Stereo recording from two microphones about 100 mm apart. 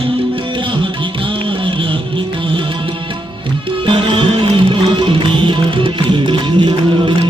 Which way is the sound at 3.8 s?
55° right (ahead or behind).